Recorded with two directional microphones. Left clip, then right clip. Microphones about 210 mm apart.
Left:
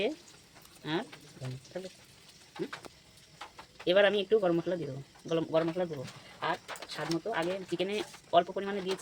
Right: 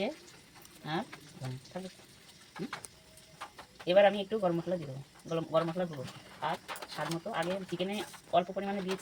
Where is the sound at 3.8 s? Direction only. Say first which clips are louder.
Even; 50° left (ahead or behind).